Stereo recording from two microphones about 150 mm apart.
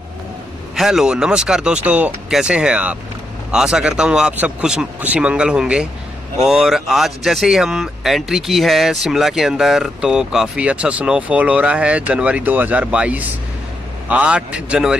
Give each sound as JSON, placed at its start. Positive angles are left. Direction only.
{"t": 0.7, "sound": "speech", "side_deg": 0}